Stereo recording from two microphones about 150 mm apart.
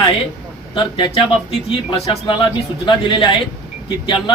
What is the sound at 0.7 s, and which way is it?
Speech, 35° left (ahead or behind).